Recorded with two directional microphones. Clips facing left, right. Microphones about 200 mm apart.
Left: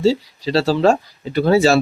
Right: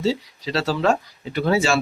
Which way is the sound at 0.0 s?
30° left (ahead or behind).